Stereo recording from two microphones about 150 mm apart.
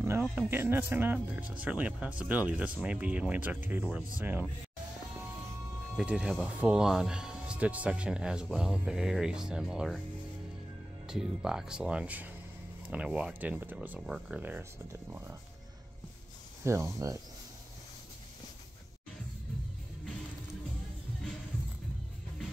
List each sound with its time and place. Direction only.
0.4 s speech: 15° right (ahead or behind)
5.9 s speech: 5° right (ahead or behind)
11.1 s speech: 5° right (ahead or behind); by 15.3 s 20° right (ahead or behind)
16.6 s speech: 20° right (ahead or behind)